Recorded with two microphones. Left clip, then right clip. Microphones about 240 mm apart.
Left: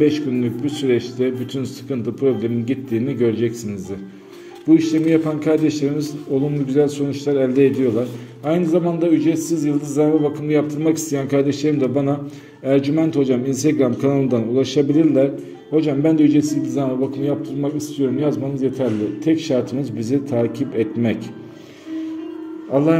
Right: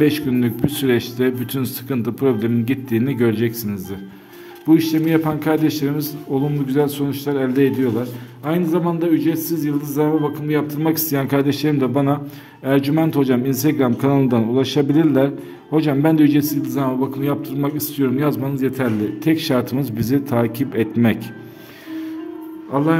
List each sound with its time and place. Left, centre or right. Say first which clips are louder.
0.0 s a man's voice: even; right
22.7 s a man's voice: left 2 dB; centre